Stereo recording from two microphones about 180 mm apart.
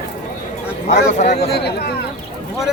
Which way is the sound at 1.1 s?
40° left (ahead or behind).